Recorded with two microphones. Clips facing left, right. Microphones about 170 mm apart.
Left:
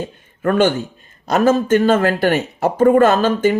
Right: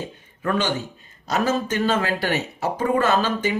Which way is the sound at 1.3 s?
50° left (ahead or behind).